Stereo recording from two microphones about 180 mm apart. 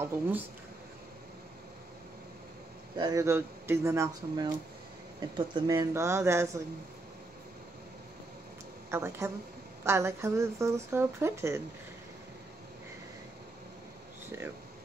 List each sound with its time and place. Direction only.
3.0 s speech: 20° right (ahead or behind)
8.9 s speech: 15° right (ahead or behind)